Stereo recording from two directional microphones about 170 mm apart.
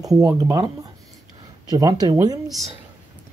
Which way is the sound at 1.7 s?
20° right (ahead or behind).